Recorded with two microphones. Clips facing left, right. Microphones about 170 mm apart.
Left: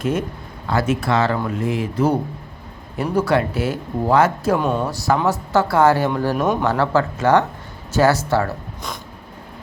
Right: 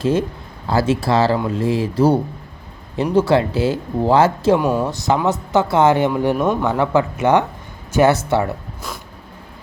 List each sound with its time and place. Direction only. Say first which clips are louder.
0.0 s speech: right 4 dB; 30° right (ahead or behind)
4.5 s speech: right 3 dB; 5° right (ahead or behind)
4.9 s speech: right 1 dB; 20° right (ahead or behind)
6.3 s speech: right 1 dB; centre (ahead or behind)
6.7 s speech: right 1 dB; 15° right (ahead or behind)